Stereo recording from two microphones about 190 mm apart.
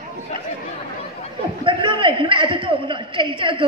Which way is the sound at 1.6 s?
25° right (ahead or behind).